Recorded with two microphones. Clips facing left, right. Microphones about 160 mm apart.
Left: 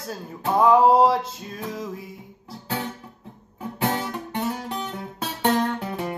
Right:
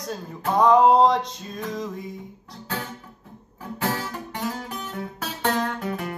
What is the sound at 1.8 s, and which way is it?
Music, 5° left (ahead or behind).